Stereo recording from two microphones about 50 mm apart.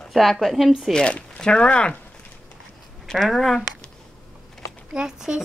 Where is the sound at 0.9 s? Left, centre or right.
Centre.